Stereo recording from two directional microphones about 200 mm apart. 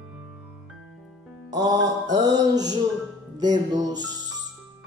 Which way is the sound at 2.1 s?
20° right (ahead or behind).